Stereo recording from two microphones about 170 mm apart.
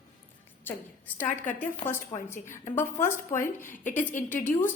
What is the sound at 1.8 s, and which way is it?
A woman's voice, 15° left (ahead or behind).